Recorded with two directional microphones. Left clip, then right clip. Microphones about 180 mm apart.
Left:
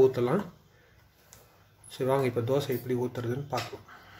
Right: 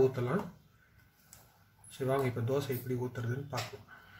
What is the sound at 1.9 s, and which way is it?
Speech, 40° left (ahead or behind).